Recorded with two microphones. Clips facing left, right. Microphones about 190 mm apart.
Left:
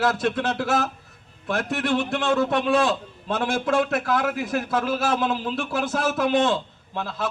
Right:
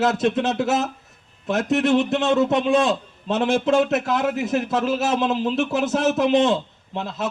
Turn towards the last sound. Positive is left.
turn(degrees=-20)  # may be behind; listen again after turning